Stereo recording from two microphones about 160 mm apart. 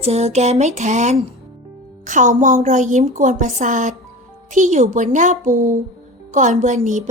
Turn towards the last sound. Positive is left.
turn(degrees=-50)  # may be behind; listen again after turning